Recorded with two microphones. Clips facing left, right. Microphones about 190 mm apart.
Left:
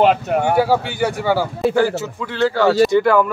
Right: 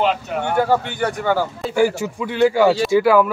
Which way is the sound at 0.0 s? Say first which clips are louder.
Left 5 dB; 55° left (ahead or behind).